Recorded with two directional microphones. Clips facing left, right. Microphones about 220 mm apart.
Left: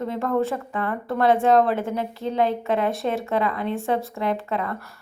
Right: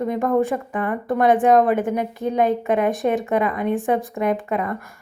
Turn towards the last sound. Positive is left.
turn(degrees=-15)  # may be behind; listen again after turning